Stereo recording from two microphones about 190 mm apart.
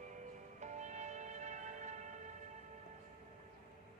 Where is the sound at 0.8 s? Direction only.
40° right (ahead or behind).